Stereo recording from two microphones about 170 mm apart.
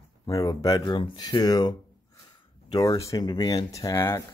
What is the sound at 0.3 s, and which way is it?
Speech, 20° left (ahead or behind).